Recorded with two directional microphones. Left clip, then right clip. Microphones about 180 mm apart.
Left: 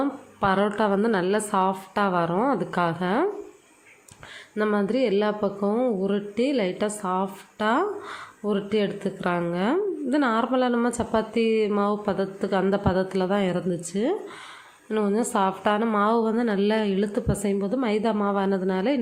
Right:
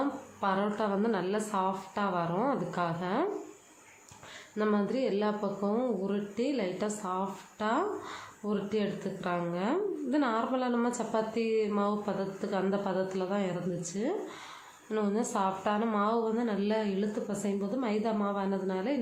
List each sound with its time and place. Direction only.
0.3 s speech: 30° left (ahead or behind)
4.5 s speech: 30° left (ahead or behind)